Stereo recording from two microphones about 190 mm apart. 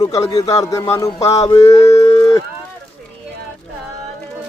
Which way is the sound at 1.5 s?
20° left (ahead or behind).